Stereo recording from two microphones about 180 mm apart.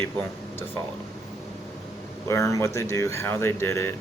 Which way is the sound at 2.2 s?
15° left (ahead or behind).